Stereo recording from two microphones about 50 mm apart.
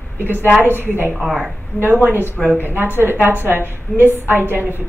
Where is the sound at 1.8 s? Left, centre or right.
Right.